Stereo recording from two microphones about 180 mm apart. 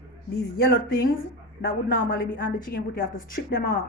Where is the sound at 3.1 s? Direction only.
60° left (ahead or behind).